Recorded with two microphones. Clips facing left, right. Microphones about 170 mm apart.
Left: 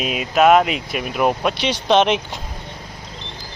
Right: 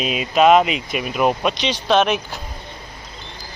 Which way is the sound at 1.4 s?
10° left (ahead or behind).